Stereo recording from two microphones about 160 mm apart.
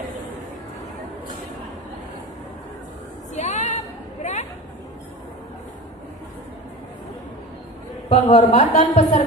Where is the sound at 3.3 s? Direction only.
45° left (ahead or behind).